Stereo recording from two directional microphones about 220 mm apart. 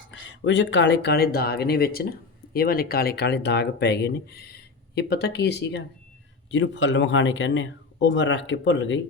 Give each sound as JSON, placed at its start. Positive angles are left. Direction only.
{"t": 0.1, "sound": "speech", "side_deg": 55}